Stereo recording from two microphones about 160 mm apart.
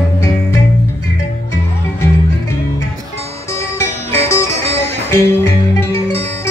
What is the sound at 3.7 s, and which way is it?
Music, 15° left (ahead or behind).